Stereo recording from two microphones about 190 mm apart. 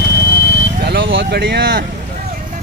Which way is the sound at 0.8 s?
70° right (ahead or behind).